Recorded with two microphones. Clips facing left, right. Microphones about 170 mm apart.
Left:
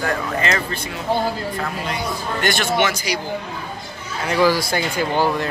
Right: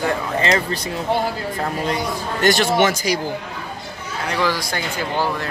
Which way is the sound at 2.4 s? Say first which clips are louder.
Right 4 dB; 40° right (ahead or behind).